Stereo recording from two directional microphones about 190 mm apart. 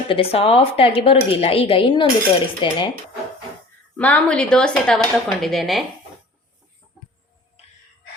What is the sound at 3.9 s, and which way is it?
A woman's voice, 5° left (ahead or behind).